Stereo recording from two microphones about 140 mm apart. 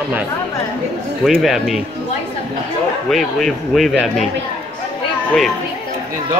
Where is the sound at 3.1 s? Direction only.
Centre (ahead or behind).